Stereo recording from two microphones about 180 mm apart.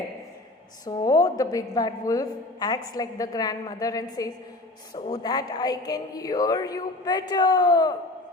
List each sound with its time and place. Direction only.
0.9 s a woman's voice: 20° left (ahead or behind)
5.1 s a woman's voice: 20° left (ahead or behind)